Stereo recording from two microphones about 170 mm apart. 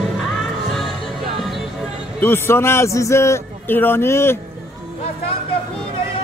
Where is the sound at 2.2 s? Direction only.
15° left (ahead or behind).